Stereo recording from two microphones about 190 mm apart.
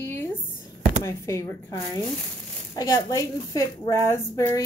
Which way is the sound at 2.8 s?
15° left (ahead or behind).